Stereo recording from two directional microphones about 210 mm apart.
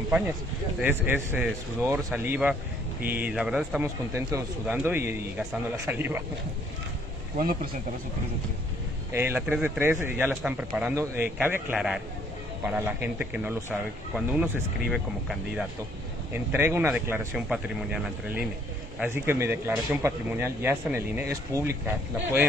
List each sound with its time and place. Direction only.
0.7 s a man's voice: 10° right (ahead or behind)
7.3 s speech: 45° right (ahead or behind)
9.1 s a man's voice: 10° right (ahead or behind)